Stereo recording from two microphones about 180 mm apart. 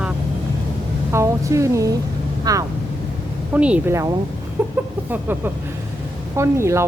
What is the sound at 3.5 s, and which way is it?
Speech, 5° right (ahead or behind).